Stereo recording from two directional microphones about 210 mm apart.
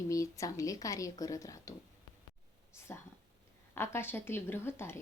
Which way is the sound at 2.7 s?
10° left (ahead or behind).